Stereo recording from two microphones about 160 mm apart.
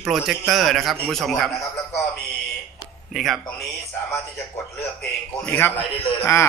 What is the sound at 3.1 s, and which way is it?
Speech, centre (ahead or behind).